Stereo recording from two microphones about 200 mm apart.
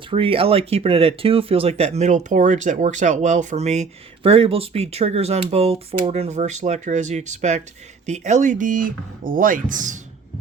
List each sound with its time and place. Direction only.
0.1 s speech: 25° right (ahead or behind)